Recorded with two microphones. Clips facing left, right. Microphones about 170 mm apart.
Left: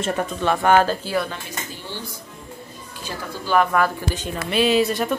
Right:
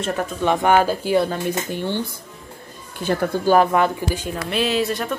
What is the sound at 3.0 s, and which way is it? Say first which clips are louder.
Speech: right 11 dB; 55° right (ahead or behind).